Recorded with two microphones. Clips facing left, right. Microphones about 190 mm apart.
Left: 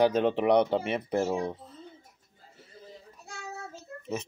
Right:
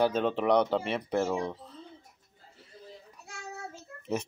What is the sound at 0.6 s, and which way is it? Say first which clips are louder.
Speech: left 2 dB; 30° left (ahead or behind).